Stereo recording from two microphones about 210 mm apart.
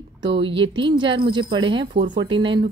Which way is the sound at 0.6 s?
25° right (ahead or behind).